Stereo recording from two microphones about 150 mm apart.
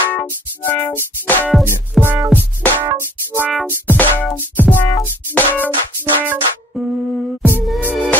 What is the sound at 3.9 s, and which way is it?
Music, 10° left (ahead or behind).